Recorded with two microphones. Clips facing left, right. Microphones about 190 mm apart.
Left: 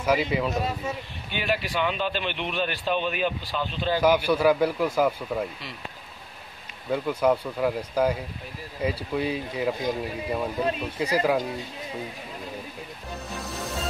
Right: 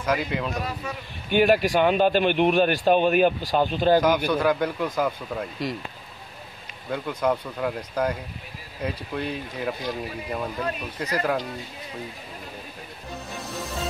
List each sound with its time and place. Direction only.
0.0 s speech: 5° left (ahead or behind)
0.6 s speech: 25° left (ahead or behind)
1.3 s speech: 50° right (ahead or behind)
4.3 s speech: 5° left (ahead or behind)
6.9 s speech: 5° left (ahead or behind)
10.6 s speech: 25° left (ahead or behind)
11.0 s speech: 10° left (ahead or behind)
13.4 s music: centre (ahead or behind)